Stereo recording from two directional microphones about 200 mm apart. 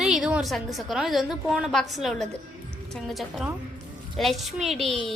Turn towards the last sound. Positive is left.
turn(degrees=0)  # may be behind; listen again after turning